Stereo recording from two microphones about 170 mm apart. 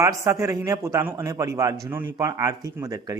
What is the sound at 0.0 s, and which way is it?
Speech, 20° right (ahead or behind).